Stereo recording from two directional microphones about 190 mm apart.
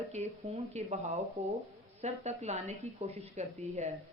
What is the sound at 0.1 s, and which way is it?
Speech, 35° right (ahead or behind).